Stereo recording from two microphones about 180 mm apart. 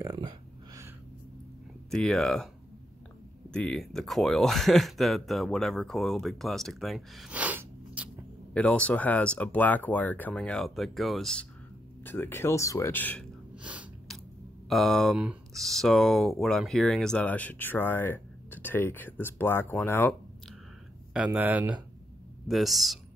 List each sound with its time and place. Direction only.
0.0 s a sound: 20° right (ahead or behind)
1.9 s speech: 5° left (ahead or behind)
8.5 s speech: 5° left (ahead or behind)
13.6 s sneeze: 5° right (ahead or behind)
14.7 s speech: centre (ahead or behind)
21.1 s speech: 5° right (ahead or behind)